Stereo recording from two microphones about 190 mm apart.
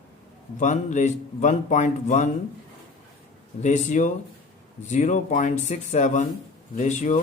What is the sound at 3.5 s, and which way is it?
Speech, 40° left (ahead or behind).